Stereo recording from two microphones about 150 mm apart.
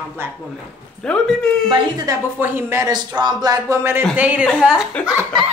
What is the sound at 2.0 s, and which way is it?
A woman's voice, 15° right (ahead or behind).